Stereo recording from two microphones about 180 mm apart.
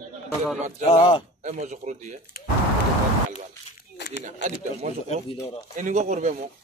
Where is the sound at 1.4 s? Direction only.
40° right (ahead or behind).